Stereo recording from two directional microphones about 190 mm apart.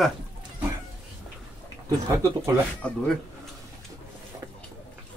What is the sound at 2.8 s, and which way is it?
Speech, 5° left (ahead or behind).